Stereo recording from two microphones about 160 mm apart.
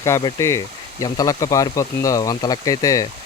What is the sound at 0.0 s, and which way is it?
Speech, 20° left (ahead or behind).